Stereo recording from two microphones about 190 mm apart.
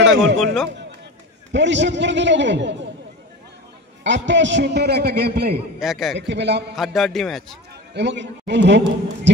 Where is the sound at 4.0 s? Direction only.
70° right (ahead or behind).